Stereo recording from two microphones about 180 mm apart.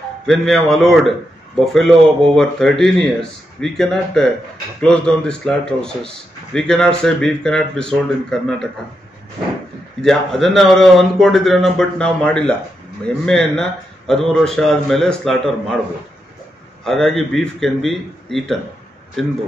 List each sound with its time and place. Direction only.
0.3 s a man's voice: centre (ahead or behind)
10.0 s a man's voice: centre (ahead or behind)
16.8 s a man's voice: centre (ahead or behind)